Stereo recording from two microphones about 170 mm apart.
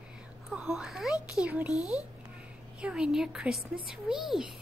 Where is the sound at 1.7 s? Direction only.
20° left (ahead or behind).